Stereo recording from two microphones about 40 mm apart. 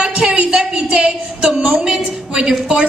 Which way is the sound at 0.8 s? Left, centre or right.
Right.